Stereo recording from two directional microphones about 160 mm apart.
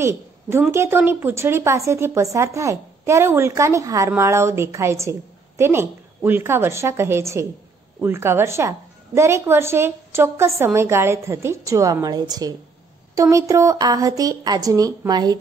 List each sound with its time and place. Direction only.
0.0 s a woman's voice: 15° right (ahead or behind)